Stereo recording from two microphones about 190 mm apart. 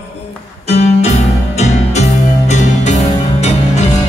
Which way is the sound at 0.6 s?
35° left (ahead or behind).